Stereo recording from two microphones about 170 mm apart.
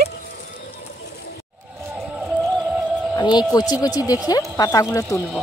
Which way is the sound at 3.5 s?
20° left (ahead or behind).